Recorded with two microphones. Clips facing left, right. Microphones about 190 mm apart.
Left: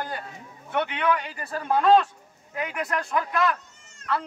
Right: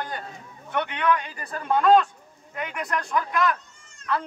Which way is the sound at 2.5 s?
5° left (ahead or behind).